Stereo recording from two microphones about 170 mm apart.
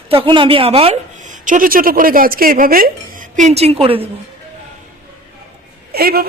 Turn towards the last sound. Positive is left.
turn(degrees=-65)  # may be behind; listen again after turning